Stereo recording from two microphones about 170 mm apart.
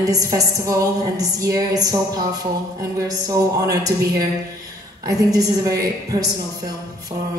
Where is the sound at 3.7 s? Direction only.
20° right (ahead or behind).